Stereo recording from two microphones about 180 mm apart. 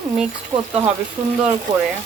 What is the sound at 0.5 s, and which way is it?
Speech, 30° right (ahead or behind).